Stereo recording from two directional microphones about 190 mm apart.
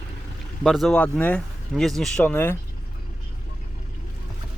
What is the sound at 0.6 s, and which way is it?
Speech, centre (ahead or behind).